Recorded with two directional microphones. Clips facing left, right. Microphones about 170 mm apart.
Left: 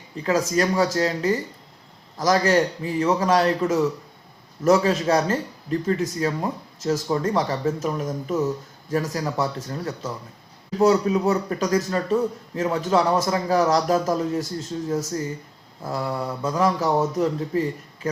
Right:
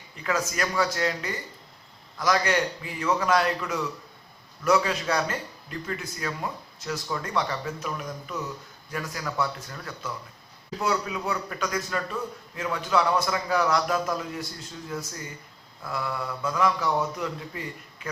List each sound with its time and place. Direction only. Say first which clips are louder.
0.2 s a man's voice: left 7 dB; 30° left (ahead or behind)